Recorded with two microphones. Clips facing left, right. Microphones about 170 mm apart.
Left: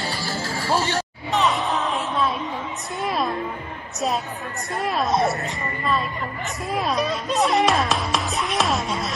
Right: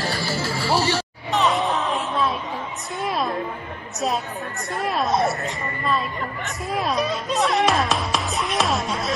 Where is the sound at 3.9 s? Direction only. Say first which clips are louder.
Even; centre (ahead or behind).